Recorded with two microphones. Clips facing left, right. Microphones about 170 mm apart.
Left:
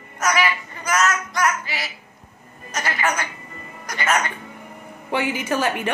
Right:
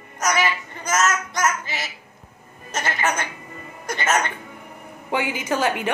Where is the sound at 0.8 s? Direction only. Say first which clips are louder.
Even; 20° right (ahead or behind).